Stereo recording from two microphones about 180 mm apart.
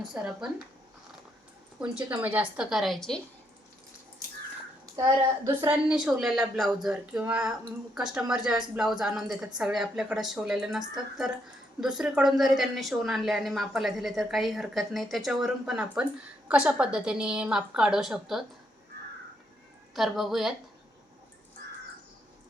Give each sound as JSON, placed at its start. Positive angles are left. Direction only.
{"t": 0.1, "sound": "speech", "side_deg": -5}
{"t": 1.8, "sound": "speech", "side_deg": -10}
{"t": 5.6, "sound": "speech", "side_deg": -5}
{"t": 20.0, "sound": "speech", "side_deg": 0}